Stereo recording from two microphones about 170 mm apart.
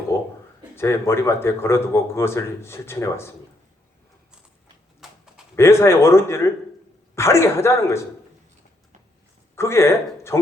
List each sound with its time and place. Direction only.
0.1 s a sound: 15° left (ahead or behind)
0.8 s speech: 15° left (ahead or behind)
5.5 s speech: 15° left (ahead or behind)
9.6 s speech: 15° left (ahead or behind)